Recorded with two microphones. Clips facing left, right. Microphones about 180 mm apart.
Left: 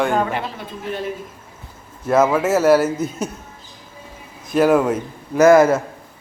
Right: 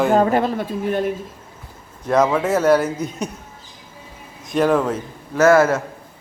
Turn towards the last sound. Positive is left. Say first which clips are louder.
# left 2 dB
turn(degrees=15)  # may be behind; listen again after turning